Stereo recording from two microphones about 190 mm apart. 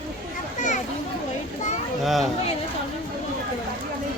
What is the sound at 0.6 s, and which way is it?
Speech, 40° left (ahead or behind).